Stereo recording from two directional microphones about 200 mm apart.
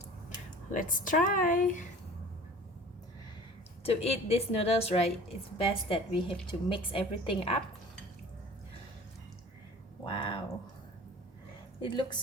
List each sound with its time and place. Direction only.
0.7 s a woman's voice: 40° left (ahead or behind)
3.8 s a woman's voice: 30° left (ahead or behind)
10.1 s a sound: 25° left (ahead or behind)
11.8 s a woman's voice: 25° left (ahead or behind)